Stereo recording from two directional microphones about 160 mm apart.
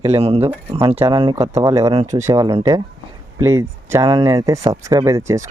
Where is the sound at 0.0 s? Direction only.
40° right (ahead or behind).